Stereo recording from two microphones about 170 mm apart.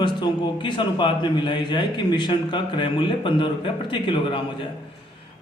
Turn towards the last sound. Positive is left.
turn(degrees=30)  # may be behind; listen again after turning